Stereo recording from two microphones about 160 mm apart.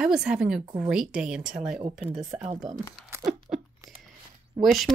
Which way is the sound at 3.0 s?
20° right (ahead or behind).